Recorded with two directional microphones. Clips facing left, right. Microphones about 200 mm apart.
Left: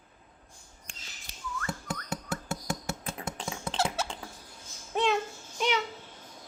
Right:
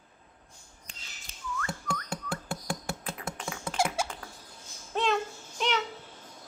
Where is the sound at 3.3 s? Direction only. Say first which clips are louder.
Left 1 dB; 30° left (ahead or behind).